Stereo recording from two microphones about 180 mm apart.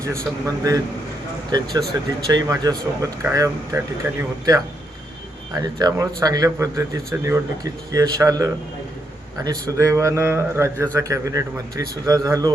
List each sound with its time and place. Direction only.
0.0 s a man's voice: 20° right (ahead or behind)